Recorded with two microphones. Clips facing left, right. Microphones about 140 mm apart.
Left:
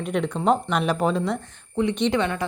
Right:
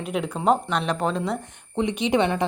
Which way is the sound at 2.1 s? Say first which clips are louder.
Right 3 dB; 25° right (ahead or behind).